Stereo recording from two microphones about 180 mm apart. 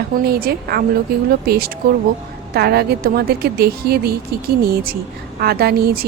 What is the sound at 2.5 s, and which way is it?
A woman's voice, 60° right (ahead or behind).